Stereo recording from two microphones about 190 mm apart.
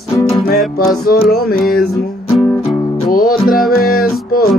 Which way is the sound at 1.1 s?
55° left (ahead or behind).